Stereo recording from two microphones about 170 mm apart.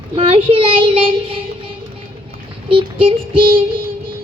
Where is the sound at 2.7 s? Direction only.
30° right (ahead or behind).